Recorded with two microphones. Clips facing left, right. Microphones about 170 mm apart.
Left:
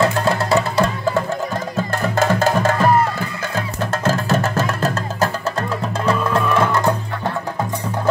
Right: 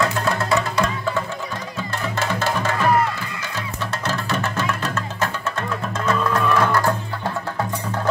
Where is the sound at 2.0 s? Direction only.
50° left (ahead or behind).